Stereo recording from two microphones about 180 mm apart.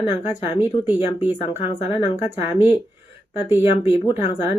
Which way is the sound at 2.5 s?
10° right (ahead or behind).